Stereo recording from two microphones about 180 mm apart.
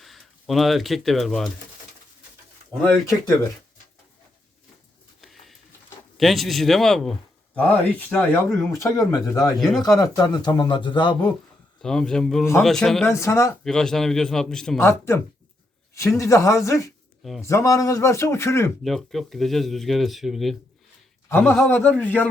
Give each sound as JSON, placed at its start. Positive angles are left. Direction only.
{"t": 0.0, "sound": "speech", "side_deg": 0}
{"t": 2.8, "sound": "speech", "side_deg": 10}
{"t": 5.2, "sound": "pigeon", "side_deg": 0}
{"t": 6.1, "sound": "a man's voice", "side_deg": 0}
{"t": 9.6, "sound": "speech", "side_deg": 0}
{"t": 10.0, "sound": "a man's voice", "side_deg": 20}
{"t": 11.8, "sound": "speech", "side_deg": 5}
{"t": 13.1, "sound": "speech", "side_deg": 15}
{"t": 13.7, "sound": "speech", "side_deg": 5}
{"t": 14.8, "sound": "speech", "side_deg": 15}
{"t": 18.8, "sound": "speech", "side_deg": 0}
{"t": 21.2, "sound": "speech", "side_deg": 10}